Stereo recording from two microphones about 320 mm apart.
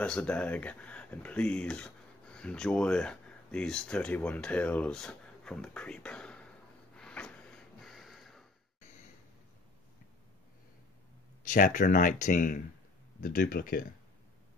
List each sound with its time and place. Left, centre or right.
0.0 s speech: centre
7.0 s snort: centre
11.4 s speech: left